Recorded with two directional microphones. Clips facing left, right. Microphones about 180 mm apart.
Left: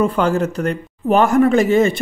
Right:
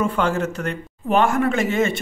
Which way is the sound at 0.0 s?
40° left (ahead or behind).